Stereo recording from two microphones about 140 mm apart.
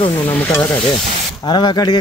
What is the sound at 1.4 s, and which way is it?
Speech, 30° left (ahead or behind).